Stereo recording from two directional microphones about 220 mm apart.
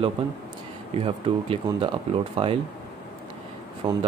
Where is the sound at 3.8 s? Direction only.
20° right (ahead or behind).